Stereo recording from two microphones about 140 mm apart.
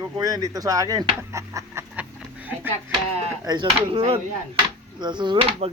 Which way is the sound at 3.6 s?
45° right (ahead or behind).